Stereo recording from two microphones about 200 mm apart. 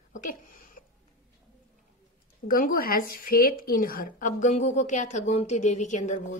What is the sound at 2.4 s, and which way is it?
A woman's voice, 45° left (ahead or behind).